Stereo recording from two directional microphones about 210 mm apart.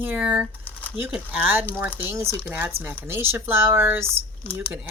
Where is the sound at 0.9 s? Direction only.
10° right (ahead or behind).